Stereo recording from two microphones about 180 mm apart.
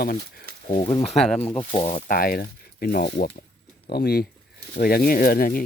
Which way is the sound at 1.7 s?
35° left (ahead or behind).